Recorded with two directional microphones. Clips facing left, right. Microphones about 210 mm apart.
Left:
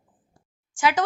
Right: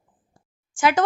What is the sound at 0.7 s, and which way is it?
Speech, 50° right (ahead or behind).